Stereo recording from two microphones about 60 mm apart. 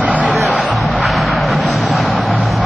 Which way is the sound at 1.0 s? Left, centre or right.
Centre.